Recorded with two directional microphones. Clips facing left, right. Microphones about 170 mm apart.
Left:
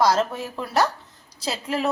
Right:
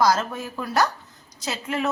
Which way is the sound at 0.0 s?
30° left (ahead or behind).